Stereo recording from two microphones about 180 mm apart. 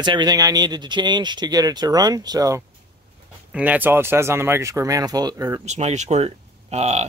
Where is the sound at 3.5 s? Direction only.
10° right (ahead or behind).